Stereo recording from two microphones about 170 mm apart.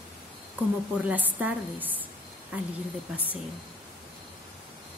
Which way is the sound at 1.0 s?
10° right (ahead or behind).